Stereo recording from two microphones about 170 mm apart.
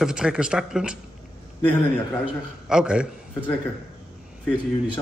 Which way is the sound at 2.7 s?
5° right (ahead or behind).